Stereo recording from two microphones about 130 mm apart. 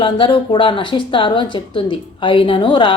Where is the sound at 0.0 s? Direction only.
40° left (ahead or behind).